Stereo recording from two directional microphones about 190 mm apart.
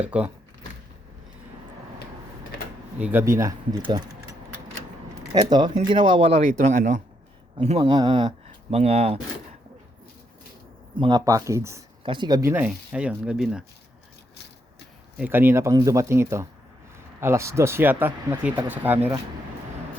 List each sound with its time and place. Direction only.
0.0 s speech: 5° right (ahead or behind)
3.0 s speech: 10° right (ahead or behind)
5.2 s speech: 20° right (ahead or behind); by 7.0 s 40° right (ahead or behind)
7.5 s speech: 30° right (ahead or behind)
10.9 s speech: 25° right (ahead or behind); by 13.7 s 5° right (ahead or behind)
15.2 s speech: 10° right (ahead or behind)